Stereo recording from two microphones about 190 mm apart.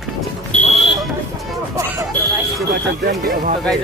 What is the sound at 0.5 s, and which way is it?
Buzzer, 40° left (ahead or behind).